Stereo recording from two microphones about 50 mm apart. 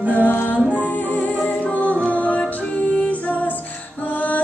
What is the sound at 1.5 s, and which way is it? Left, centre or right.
Music, left.